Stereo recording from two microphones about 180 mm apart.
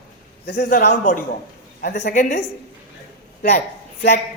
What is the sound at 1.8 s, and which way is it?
Speech, 60° left (ahead or behind).